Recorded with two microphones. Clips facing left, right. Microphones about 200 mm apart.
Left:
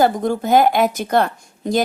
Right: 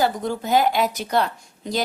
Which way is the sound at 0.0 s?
50° left (ahead or behind).